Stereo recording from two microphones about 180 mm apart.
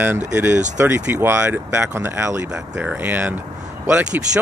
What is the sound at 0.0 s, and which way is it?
Speech, 10° right (ahead or behind).